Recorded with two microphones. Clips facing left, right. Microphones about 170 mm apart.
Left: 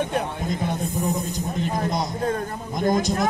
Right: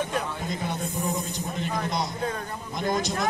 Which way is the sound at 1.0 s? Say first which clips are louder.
Left 4 dB; 40° left (ahead or behind).